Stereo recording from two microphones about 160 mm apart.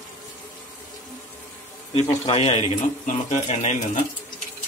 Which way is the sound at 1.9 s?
35° left (ahead or behind).